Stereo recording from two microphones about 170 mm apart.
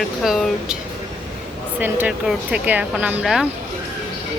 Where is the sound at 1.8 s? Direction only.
10° right (ahead or behind).